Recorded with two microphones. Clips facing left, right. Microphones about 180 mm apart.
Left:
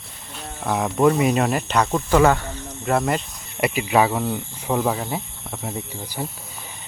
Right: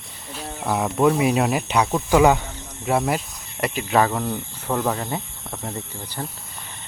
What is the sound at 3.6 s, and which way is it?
Speech, 5° left (ahead or behind).